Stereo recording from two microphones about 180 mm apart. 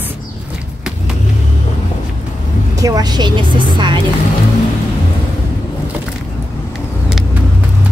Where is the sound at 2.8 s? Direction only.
20° right (ahead or behind).